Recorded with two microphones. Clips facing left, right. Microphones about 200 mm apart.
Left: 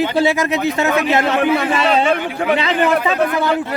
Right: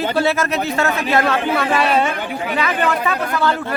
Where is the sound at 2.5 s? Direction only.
25° left (ahead or behind).